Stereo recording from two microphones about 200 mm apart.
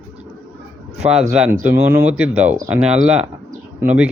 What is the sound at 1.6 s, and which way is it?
Speech, 10° right (ahead or behind).